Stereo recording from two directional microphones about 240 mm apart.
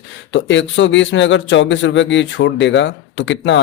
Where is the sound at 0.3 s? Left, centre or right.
Left.